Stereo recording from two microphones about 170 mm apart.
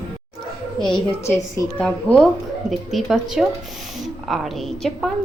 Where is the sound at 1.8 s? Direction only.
5° left (ahead or behind).